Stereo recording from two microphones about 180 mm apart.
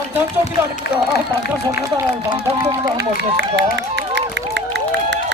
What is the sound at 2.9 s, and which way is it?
Run, 75° right (ahead or behind).